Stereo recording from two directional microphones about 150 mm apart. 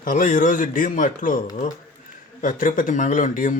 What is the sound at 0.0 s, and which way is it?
Speech, 65° left (ahead or behind).